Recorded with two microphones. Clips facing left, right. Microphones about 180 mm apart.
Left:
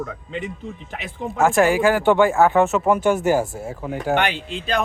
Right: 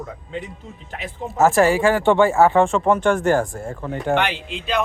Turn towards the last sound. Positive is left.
turn(degrees=40)  # may be behind; listen again after turning